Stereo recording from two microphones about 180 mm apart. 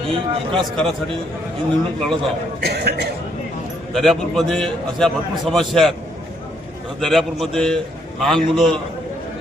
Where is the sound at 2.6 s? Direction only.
65° right (ahead or behind).